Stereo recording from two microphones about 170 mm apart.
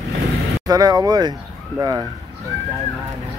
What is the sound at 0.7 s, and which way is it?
Speech, 20° right (ahead or behind).